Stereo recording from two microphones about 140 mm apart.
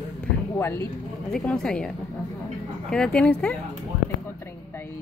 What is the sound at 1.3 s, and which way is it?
A woman's voice, 5° left (ahead or behind).